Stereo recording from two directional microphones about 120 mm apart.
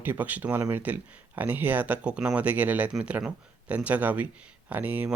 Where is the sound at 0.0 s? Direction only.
15° right (ahead or behind).